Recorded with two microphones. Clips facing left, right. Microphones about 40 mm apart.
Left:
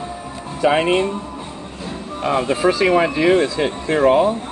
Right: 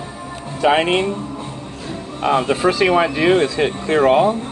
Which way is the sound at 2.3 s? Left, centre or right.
Centre.